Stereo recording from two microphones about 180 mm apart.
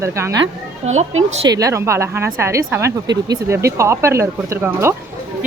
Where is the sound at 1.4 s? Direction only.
20° right (ahead or behind).